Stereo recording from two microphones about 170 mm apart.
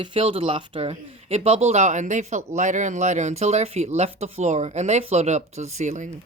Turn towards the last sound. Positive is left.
turn(degrees=-45)  # may be behind; listen again after turning